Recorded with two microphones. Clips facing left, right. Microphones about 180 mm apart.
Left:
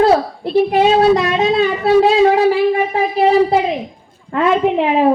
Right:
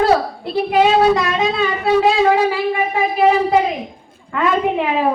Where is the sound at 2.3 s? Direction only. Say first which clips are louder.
Left 4 dB; 40° left (ahead or behind).